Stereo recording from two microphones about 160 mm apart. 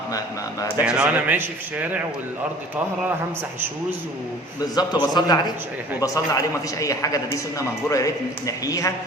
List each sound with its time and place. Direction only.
0.9 s a man's voice: 10° right (ahead or behind)
4.7 s a man's voice: 25° left (ahead or behind)